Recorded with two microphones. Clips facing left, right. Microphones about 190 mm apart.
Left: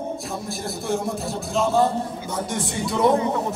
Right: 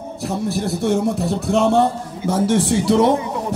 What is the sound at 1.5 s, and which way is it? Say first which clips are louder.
Speech: right 4 dB; 65° right (ahead or behind).